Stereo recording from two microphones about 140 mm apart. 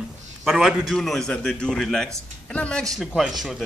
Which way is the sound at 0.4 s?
5° right (ahead or behind).